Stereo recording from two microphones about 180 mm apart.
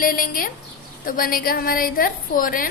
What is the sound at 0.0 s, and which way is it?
A woman's voice, 55° left (ahead or behind).